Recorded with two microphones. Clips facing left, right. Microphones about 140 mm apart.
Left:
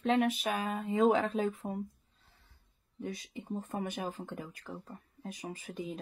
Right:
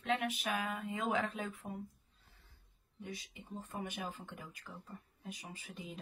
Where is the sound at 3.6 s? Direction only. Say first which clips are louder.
Left 3 dB; 40° left (ahead or behind).